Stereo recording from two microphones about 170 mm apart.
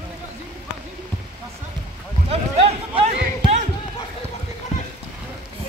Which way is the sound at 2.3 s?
35° right (ahead or behind).